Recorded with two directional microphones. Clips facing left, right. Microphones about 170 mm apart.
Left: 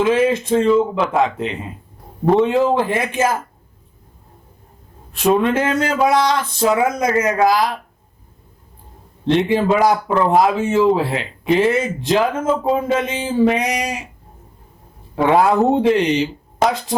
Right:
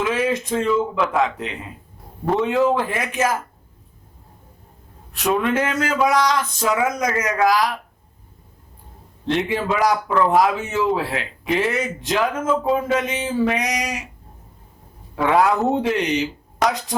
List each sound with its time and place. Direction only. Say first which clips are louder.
0.0 s a man's voice: left 6 dB; 25° left (ahead or behind)
5.1 s a man's voice: left 4 dB; 30° left (ahead or behind)
9.2 s a man's voice: left 6 dB; 25° left (ahead or behind)
15.1 s a man's voice: left 3 dB; 25° left (ahead or behind)